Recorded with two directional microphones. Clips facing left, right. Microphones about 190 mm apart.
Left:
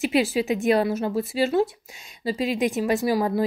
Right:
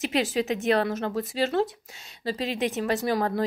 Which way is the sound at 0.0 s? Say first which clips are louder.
Left 4 dB; 10° left (ahead or behind).